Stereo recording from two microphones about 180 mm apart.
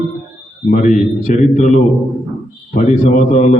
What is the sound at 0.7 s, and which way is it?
A man's voice, 45° left (ahead or behind).